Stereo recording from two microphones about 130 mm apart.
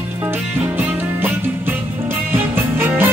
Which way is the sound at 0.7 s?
15° right (ahead or behind).